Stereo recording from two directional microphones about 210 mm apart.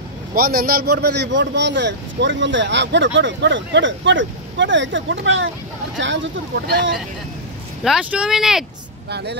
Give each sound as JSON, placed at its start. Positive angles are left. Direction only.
{"t": 0.3, "sound": "a man's voice", "side_deg": -45}
{"t": 7.8, "sound": "speech", "side_deg": -5}
{"t": 9.1, "sound": "speech", "side_deg": -55}